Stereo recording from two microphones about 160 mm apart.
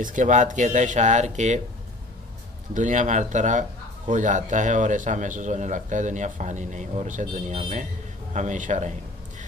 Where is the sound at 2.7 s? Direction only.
50° right (ahead or behind).